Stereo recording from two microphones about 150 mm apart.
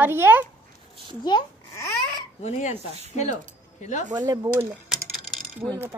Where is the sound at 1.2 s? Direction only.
30° left (ahead or behind).